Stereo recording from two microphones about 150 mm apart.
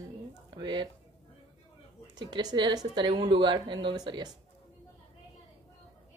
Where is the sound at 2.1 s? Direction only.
30° right (ahead or behind).